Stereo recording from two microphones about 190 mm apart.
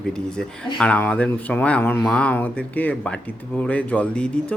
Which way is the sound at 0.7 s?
5° left (ahead or behind).